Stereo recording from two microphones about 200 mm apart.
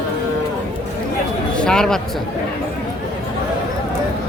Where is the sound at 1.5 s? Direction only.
5° left (ahead or behind).